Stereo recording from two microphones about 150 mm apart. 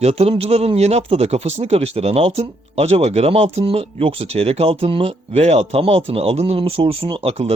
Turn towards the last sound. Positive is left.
turn(degrees=-40)  # may be behind; listen again after turning